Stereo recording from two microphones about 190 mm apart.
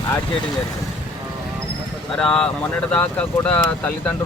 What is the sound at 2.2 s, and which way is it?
Speech, 5° left (ahead or behind).